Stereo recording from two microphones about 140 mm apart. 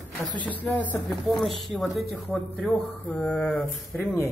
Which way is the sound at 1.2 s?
Centre (ahead or behind).